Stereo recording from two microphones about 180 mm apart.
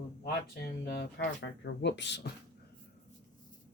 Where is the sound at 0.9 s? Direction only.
60° left (ahead or behind).